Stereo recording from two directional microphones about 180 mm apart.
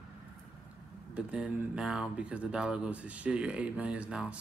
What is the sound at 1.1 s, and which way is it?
A man's voice, 5° right (ahead or behind).